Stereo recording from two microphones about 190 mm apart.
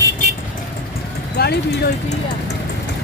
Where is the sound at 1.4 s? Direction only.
55° left (ahead or behind).